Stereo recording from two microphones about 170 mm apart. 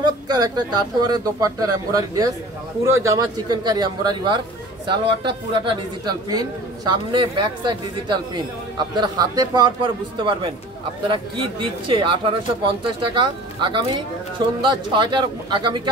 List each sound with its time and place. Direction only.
0.0 s a man's voice: 25° right (ahead or behind)